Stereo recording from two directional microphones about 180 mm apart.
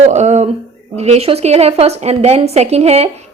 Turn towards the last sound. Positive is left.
turn(degrees=-35)  # may be behind; listen again after turning